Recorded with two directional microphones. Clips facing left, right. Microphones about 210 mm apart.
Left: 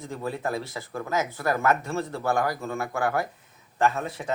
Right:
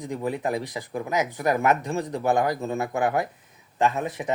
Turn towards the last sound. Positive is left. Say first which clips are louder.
# right 1 dB
turn(degrees=-20)  # may be behind; listen again after turning